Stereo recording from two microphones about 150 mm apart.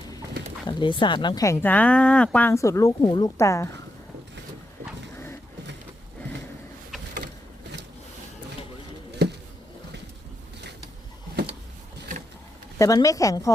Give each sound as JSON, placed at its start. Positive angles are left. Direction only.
{"t": 0.7, "sound": "speech", "side_deg": 30}
{"t": 1.6, "sound": "speech", "side_deg": 10}
{"t": 2.5, "sound": "a woman's voice", "side_deg": 20}
{"t": 12.8, "sound": "a woman's voice", "side_deg": 20}